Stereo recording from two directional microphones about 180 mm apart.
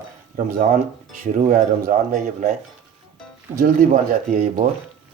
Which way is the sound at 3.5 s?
50° right (ahead or behind).